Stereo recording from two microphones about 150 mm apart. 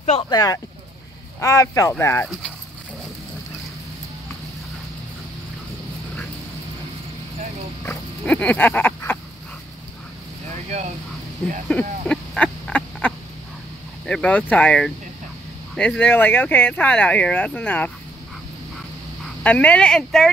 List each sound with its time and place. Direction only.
0.2 s speech: 25° left (ahead or behind)
7.8 s speech: 10° left (ahead or behind)
11.7 s a sound: 5° left (ahead or behind)
14.0 s speech: 10° left (ahead or behind)
19.4 s speech: 10° left (ahead or behind)